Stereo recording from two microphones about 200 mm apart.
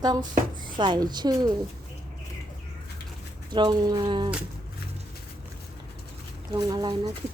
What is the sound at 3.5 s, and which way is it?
Speech, 20° right (ahead or behind).